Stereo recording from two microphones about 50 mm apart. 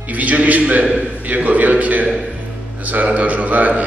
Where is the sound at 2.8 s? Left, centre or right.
Right.